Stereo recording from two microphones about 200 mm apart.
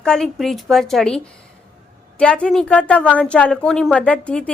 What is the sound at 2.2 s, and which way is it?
A woman's voice, 5° left (ahead or behind).